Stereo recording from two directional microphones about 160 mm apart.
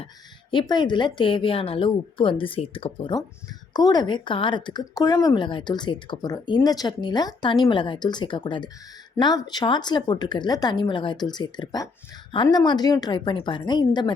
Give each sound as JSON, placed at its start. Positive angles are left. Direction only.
{"t": 0.5, "sound": "speech", "side_deg": 30}